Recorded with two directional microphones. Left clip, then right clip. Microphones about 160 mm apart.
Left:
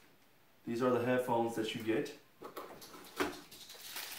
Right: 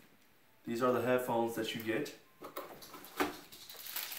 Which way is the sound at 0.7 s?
Centre (ahead or behind).